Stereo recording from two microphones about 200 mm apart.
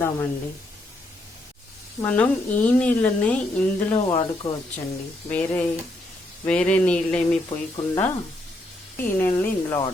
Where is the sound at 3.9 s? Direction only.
30° left (ahead or behind).